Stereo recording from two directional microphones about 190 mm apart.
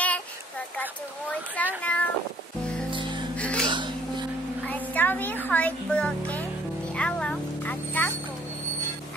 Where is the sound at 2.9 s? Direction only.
25° right (ahead or behind).